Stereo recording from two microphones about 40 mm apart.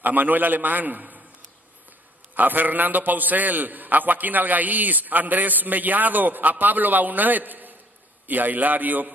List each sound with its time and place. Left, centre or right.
0.0 s a man's voice: right
2.3 s a man's voice: right